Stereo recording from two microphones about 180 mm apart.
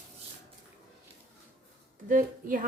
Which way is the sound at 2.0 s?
50° right (ahead or behind).